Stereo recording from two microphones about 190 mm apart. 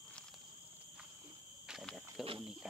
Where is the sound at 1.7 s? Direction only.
Centre (ahead or behind).